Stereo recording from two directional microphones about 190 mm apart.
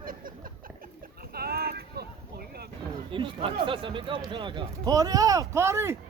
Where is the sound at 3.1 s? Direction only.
25° right (ahead or behind).